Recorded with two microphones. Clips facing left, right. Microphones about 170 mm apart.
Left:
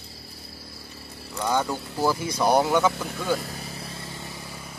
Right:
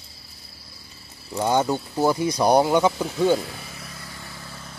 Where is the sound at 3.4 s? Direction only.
35° left (ahead or behind); by 4.7 s 15° left (ahead or behind).